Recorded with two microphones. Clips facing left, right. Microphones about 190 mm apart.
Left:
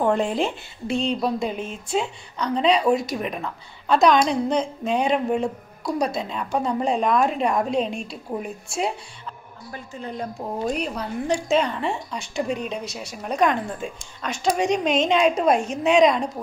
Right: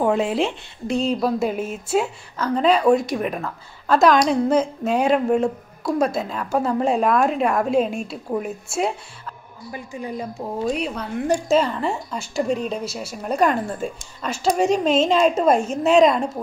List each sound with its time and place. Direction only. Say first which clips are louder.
0.0 s a woman's voice: right 2 dB; 5° right (ahead or behind)
9.7 s a woman's voice: right 3 dB; 10° right (ahead or behind)